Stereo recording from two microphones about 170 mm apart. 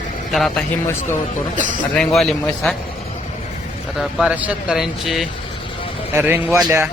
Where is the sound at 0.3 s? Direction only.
Centre (ahead or behind).